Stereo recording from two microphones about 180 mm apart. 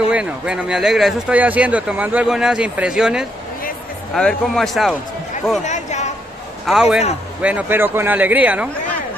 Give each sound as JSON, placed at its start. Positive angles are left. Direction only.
{"t": 0.1, "sound": "speech", "side_deg": -5}
{"t": 5.6, "sound": "chatter", "side_deg": 40}
{"t": 6.6, "sound": "a man's voice", "side_deg": 0}